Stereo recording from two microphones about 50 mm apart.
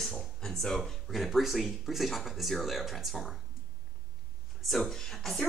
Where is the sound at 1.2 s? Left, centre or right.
Centre.